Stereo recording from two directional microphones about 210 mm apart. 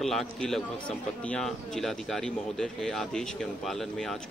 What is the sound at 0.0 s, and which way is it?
A man's voice, centre (ahead or behind).